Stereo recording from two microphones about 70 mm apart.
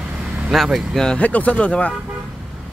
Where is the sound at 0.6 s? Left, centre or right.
Centre.